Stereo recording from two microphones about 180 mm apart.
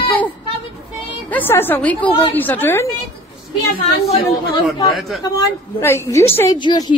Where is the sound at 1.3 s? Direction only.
10° left (ahead or behind).